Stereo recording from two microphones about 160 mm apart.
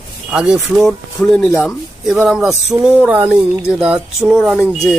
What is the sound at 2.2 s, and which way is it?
Speech, centre (ahead or behind).